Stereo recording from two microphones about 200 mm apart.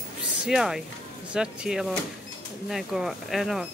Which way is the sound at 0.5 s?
Centre (ahead or behind).